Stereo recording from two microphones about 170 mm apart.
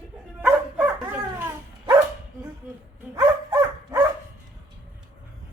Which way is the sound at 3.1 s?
20° right (ahead or behind).